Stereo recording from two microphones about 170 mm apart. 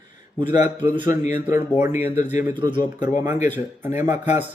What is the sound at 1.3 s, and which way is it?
Speech, 10° right (ahead or behind).